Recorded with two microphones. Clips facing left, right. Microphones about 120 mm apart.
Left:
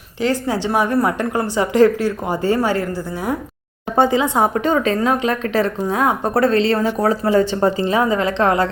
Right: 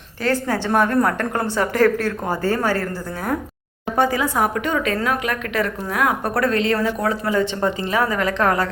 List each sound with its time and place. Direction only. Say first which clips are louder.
0.2 s a woman's voice: left 2 dB; 15° left (ahead or behind)
3.9 s a woman's voice: left 4 dB; 25° left (ahead or behind)